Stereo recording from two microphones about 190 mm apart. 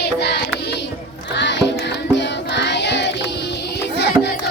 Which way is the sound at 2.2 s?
65° left (ahead or behind).